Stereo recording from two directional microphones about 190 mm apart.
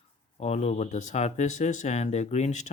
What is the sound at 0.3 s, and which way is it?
Speech, 35° left (ahead or behind).